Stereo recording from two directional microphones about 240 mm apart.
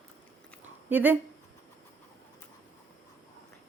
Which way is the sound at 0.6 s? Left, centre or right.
Centre.